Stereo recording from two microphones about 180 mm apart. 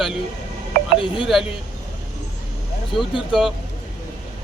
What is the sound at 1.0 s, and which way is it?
Speech, 30° left (ahead or behind).